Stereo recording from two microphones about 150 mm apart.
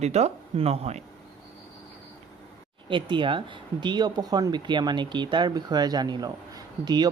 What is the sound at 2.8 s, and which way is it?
Speech, 35° right (ahead or behind).